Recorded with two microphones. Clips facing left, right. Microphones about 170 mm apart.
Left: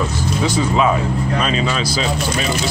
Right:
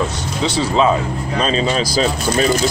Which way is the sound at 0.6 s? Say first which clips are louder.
Right 2 dB; 30° right (ahead or behind).